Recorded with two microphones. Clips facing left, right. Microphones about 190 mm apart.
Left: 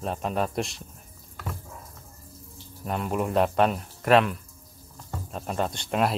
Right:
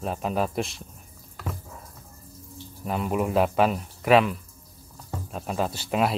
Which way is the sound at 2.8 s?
Centre (ahead or behind).